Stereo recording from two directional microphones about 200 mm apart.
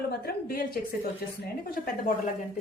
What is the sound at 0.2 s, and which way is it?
A woman's voice, 50° left (ahead or behind).